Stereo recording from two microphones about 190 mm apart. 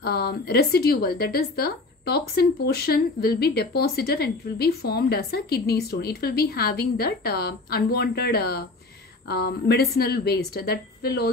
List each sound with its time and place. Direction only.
0.0 s a woman's voice: 55° left (ahead or behind)